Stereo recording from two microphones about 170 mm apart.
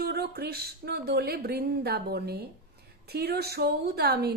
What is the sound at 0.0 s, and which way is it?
A woman's voice, 65° right (ahead or behind).